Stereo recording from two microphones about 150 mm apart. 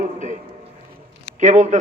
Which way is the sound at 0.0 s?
55° right (ahead or behind).